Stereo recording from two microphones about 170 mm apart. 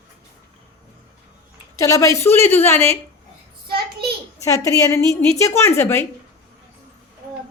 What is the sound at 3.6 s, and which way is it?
Speech, 65° right (ahead or behind).